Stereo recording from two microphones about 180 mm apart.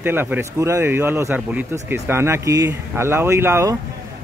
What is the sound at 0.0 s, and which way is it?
Speech, 10° right (ahead or behind).